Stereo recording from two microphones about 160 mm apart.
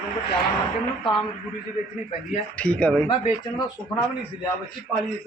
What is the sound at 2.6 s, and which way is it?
Speech, 5° left (ahead or behind).